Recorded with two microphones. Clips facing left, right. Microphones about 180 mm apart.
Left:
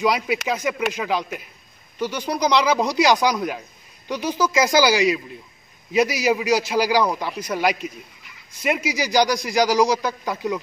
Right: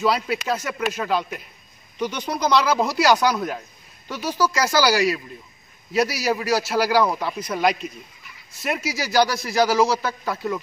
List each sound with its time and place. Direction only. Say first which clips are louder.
0.0 s speech: left 1 dB; 15° left (ahead or behind)